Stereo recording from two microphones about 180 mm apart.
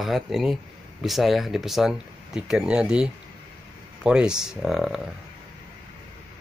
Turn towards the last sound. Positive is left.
turn(degrees=0)  # may be behind; listen again after turning